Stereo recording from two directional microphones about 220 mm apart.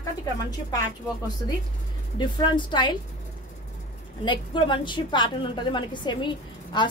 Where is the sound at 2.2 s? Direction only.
20° left (ahead or behind).